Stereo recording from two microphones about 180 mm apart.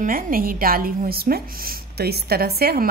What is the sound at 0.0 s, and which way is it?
A woman's voice, 50° right (ahead or behind).